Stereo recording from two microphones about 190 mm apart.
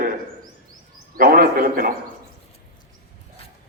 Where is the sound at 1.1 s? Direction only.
50° right (ahead or behind).